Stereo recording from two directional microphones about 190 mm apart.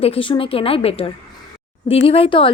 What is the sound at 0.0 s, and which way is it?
Speech, 30° left (ahead or behind).